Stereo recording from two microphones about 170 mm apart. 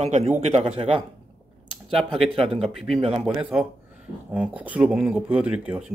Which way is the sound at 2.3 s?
35° right (ahead or behind).